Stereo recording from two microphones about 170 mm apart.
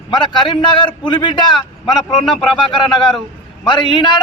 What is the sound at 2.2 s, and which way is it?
Speech, 5° left (ahead or behind).